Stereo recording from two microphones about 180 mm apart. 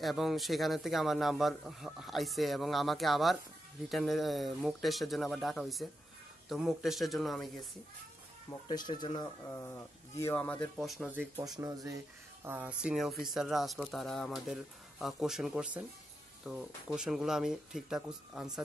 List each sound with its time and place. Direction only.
0.0 s a man's voice: centre (ahead or behind)
8.5 s speech: 25° left (ahead or behind); by 11.1 s centre (ahead or behind)
11.3 s speech: 20° right (ahead or behind)
12.4 s a man's voice: 10° right (ahead or behind)